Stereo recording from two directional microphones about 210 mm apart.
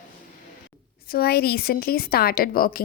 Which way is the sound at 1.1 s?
45° left (ahead or behind).